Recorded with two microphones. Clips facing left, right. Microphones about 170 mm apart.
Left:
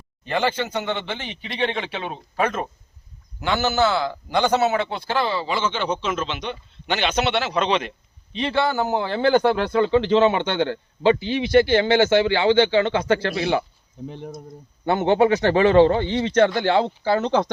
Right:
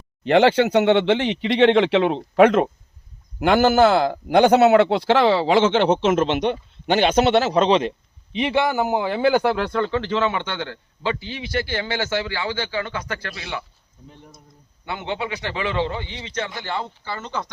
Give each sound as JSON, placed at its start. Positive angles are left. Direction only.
{"t": 0.3, "sound": "speech", "side_deg": -70}
{"t": 3.4, "sound": "speech", "side_deg": -50}
{"t": 6.1, "sound": "a man's voice", "side_deg": -60}
{"t": 8.3, "sound": "a man's voice", "side_deg": -15}
{"t": 9.7, "sound": "a man's voice", "side_deg": 15}
{"t": 14.1, "sound": "speech", "side_deg": 75}
{"t": 14.8, "sound": "a man's voice", "side_deg": 45}
{"t": 16.6, "sound": "speech", "side_deg": 80}